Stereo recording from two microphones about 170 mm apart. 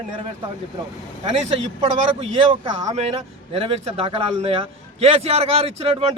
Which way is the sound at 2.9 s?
40° right (ahead or behind).